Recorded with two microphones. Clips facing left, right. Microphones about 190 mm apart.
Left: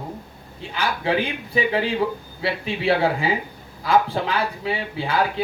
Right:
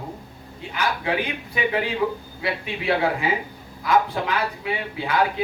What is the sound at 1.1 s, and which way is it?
A man's voice, 30° left (ahead or behind).